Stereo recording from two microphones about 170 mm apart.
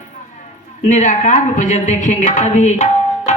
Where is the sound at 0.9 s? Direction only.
45° left (ahead or behind).